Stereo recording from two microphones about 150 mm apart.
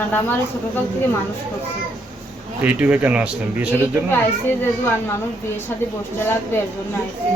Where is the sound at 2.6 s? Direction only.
10° right (ahead or behind).